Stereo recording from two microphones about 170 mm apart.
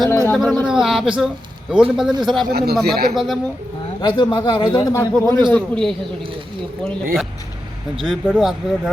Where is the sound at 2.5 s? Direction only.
70° right (ahead or behind).